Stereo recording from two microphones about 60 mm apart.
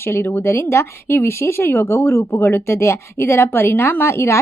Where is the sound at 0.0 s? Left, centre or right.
Left.